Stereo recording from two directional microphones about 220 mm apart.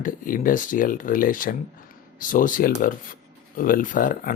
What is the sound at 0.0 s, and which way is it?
Speech, 40° left (ahead or behind).